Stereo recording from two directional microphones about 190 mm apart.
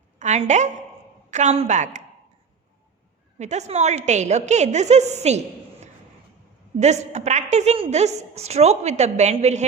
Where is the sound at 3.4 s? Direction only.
35° right (ahead or behind).